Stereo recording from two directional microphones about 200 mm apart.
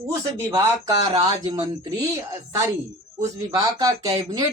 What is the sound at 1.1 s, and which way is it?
Speech, 20° right (ahead or behind).